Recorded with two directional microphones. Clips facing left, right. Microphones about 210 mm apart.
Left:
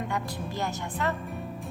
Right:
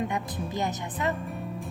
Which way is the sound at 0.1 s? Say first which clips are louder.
Right 1 dB; 20° right (ahead or behind).